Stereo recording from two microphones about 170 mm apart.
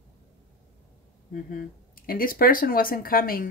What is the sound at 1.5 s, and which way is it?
Speech, 55° left (ahead or behind).